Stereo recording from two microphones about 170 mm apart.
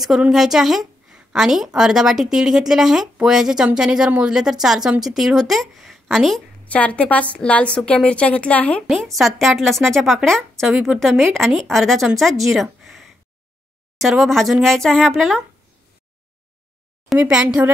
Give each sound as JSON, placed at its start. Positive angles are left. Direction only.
{"t": 0.0, "sound": "a woman's voice", "side_deg": 0}
{"t": 17.1, "sound": "a woman's voice", "side_deg": -5}